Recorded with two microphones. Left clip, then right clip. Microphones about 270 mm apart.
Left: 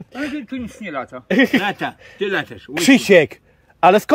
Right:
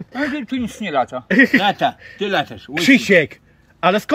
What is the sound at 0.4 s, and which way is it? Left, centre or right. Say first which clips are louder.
Speech: right 4 dB; right.